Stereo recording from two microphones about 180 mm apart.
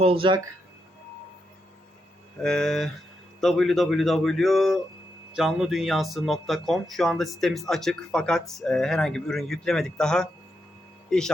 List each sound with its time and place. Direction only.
0.0 s speech: 30° right (ahead or behind)
2.4 s speech: 5° left (ahead or behind)